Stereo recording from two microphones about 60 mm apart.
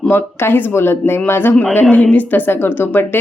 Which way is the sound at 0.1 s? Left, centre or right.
Left.